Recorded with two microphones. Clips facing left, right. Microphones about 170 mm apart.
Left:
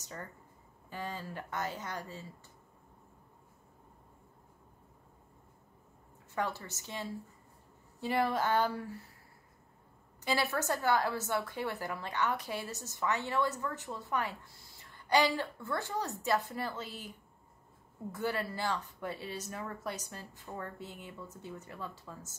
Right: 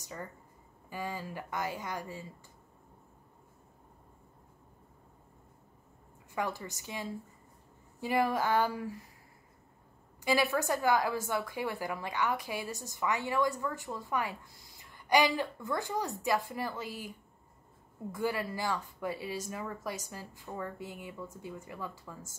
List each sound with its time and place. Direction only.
0.0 s a woman's voice: 10° right (ahead or behind)
6.3 s a woman's voice: 15° right (ahead or behind)
10.2 s a woman's voice: 10° right (ahead or behind)
18.1 s a woman's voice: 10° right (ahead or behind)